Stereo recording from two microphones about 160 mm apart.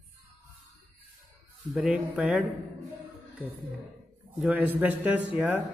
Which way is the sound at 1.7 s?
10° right (ahead or behind).